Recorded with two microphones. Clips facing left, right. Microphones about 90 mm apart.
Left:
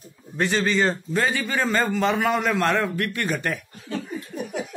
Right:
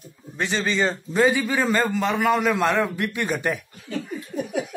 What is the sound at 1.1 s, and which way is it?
A man's voice, 10° right (ahead or behind).